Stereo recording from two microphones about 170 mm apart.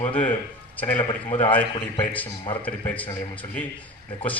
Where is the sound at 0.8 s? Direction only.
10° left (ahead or behind).